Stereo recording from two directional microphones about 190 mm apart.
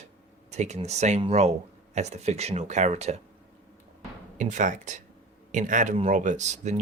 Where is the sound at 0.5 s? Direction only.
35° right (ahead or behind).